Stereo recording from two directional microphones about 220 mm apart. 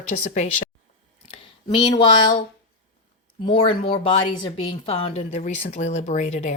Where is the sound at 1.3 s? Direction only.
30° left (ahead or behind).